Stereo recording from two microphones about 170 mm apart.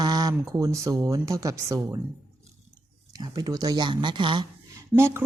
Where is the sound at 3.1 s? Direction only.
25° right (ahead or behind).